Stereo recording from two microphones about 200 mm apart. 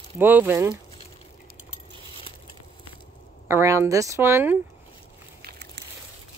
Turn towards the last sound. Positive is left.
turn(degrees=-10)  # may be behind; listen again after turning